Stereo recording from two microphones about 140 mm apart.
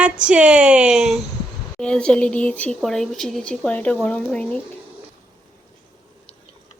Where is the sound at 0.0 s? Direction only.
10° right (ahead or behind).